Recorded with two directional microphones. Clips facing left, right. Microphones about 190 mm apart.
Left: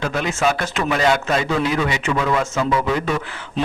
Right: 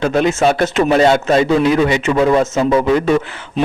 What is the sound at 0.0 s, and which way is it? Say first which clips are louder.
A man's voice: right 7 dB; 25° right (ahead or behind).